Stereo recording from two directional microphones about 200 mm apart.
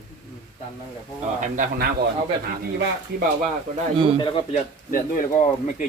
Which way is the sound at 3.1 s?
50° right (ahead or behind).